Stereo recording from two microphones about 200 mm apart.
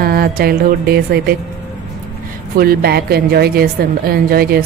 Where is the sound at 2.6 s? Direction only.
50° right (ahead or behind).